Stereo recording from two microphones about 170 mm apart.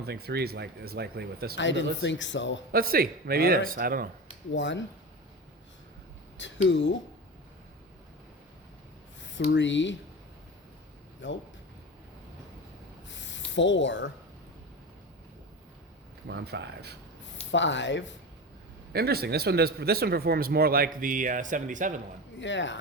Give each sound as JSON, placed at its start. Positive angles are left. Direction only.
{"t": 0.0, "sound": "speech", "side_deg": -70}
{"t": 1.5, "sound": "speech", "side_deg": 90}
{"t": 2.7, "sound": "a man's voice", "side_deg": -60}
{"t": 4.5, "sound": "speech", "side_deg": 90}
{"t": 6.7, "sound": "speech", "side_deg": 90}
{"t": 9.5, "sound": "speech", "side_deg": 90}
{"t": 11.2, "sound": "speech", "side_deg": 90}
{"t": 13.1, "sound": "a sound", "side_deg": 90}
{"t": 16.2, "sound": "speech", "side_deg": -75}
{"t": 17.5, "sound": "speech", "side_deg": 90}
{"t": 18.9, "sound": "a man's voice", "side_deg": -70}
{"t": 22.4, "sound": "speech", "side_deg": 90}